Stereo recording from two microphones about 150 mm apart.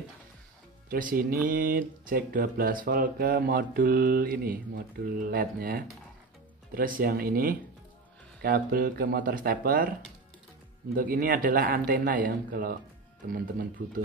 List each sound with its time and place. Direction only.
0.8 s speech: 70° right (ahead or behind)
11.0 s speech: 70° right (ahead or behind)